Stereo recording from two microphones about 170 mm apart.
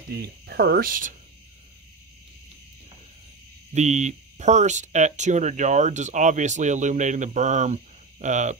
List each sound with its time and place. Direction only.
0.1 s speech: 70° right (ahead or behind)
3.7 s speech: 45° right (ahead or behind)